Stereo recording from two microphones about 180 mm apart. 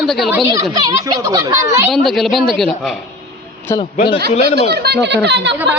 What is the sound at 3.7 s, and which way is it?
Speech, 15° left (ahead or behind).